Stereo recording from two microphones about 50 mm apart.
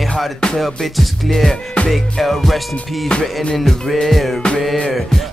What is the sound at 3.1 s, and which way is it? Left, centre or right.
Music, centre.